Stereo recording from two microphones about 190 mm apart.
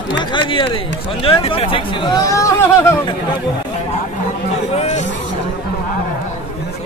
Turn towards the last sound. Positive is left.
turn(degrees=35)  # may be behind; listen again after turning